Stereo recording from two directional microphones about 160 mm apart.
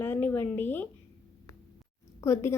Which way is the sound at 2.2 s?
15° left (ahead or behind).